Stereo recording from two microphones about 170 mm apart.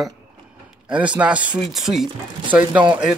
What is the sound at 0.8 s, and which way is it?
Speech, 5° right (ahead or behind).